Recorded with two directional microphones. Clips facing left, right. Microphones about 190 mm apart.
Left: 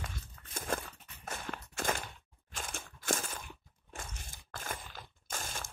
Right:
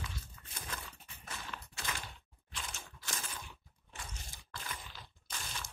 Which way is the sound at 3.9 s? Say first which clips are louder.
Left 3 dB; 50° left (ahead or behind).